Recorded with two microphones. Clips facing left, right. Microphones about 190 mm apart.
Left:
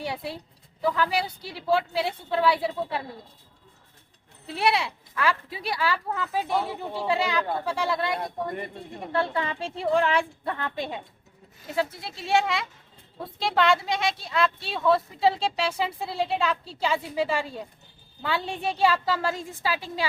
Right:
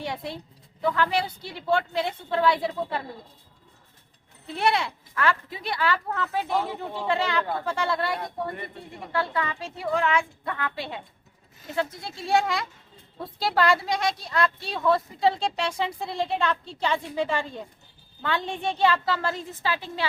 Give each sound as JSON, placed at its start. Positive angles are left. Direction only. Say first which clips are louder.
{"t": 0.0, "sound": "a woman's voice", "louder": "even", "side_deg": 10}
{"t": 4.5, "sound": "speech", "louder": "even", "side_deg": 10}
{"t": 9.1, "sound": "a woman's voice", "louder": "left 1 dB", "side_deg": 25}
{"t": 10.8, "sound": "speech", "louder": "left 3 dB", "side_deg": 15}
{"t": 11.9, "sound": "speech", "louder": "right 3 dB", "side_deg": 0}